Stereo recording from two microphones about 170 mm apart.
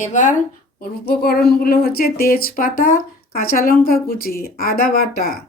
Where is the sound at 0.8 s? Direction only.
60° left (ahead or behind).